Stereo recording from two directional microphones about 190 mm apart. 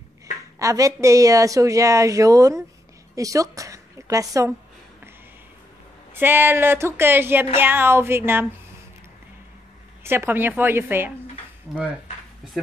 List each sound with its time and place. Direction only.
0.6 s a woman's voice: 15° right (ahead or behind)
6.1 s speech: 10° right (ahead or behind)
10.0 s speech: 10° right (ahead or behind)